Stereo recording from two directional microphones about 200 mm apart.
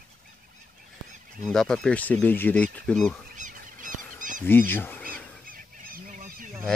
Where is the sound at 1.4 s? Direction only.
5° left (ahead or behind).